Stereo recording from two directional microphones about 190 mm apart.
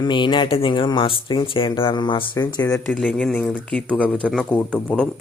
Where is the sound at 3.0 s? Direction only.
5° left (ahead or behind).